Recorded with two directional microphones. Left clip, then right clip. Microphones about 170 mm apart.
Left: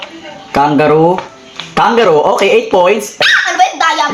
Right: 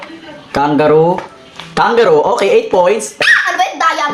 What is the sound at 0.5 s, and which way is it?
Speech, 30° left (ahead or behind).